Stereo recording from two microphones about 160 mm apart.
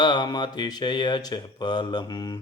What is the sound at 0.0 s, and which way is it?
Mantra, 25° left (ahead or behind).